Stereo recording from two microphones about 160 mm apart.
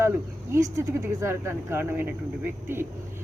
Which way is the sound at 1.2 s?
15° right (ahead or behind).